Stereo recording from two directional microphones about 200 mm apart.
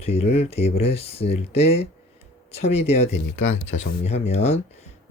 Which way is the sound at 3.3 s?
70° left (ahead or behind).